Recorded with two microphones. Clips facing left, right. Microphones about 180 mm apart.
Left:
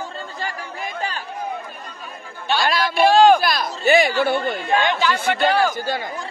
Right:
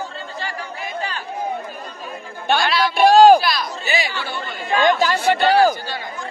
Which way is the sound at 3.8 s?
55° left (ahead or behind).